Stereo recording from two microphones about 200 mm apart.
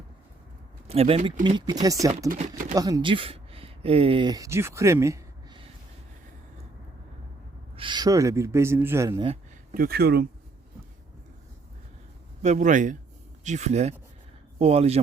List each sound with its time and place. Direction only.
0.9 s speech: 30° right (ahead or behind)
2.3 s speech: 40° right (ahead or behind)
2.7 s speech: 20° right (ahead or behind)
7.8 s speech: 20° right (ahead or behind)
9.7 s speech: 50° right (ahead or behind)
12.4 s speech: 35° right (ahead or behind)